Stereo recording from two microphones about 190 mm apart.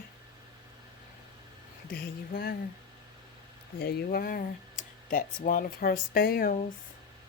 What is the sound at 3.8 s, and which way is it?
Speech, 55° left (ahead or behind).